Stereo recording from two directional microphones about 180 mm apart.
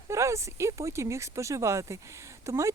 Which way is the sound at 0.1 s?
15° right (ahead or behind).